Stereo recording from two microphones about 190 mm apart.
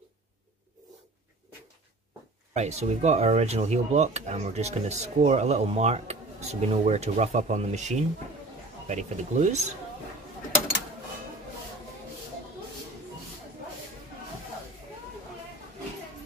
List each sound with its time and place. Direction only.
2.5 s speech: 35° right (ahead or behind)